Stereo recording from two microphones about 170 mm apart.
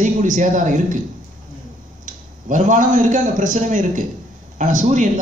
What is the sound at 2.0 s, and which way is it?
A man's voice, 50° right (ahead or behind).